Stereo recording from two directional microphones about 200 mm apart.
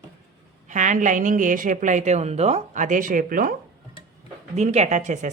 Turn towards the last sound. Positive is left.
turn(degrees=-35)  # may be behind; listen again after turning